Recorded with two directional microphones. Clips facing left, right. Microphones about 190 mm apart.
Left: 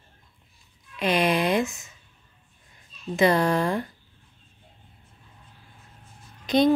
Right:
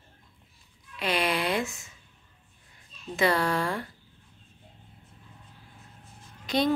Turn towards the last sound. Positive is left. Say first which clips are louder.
# left 6 dB
turn(degrees=20)  # may be behind; listen again after turning